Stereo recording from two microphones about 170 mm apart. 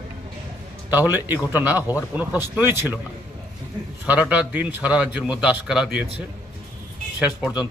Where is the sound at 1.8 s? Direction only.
15° left (ahead or behind).